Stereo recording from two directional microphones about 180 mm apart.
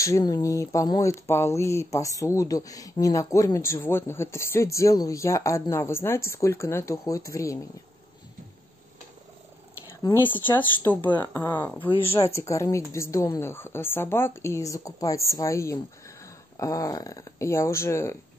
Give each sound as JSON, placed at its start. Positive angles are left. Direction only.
{"t": 0.0, "sound": "speech", "side_deg": 20}
{"t": 10.4, "sound": "speech", "side_deg": 10}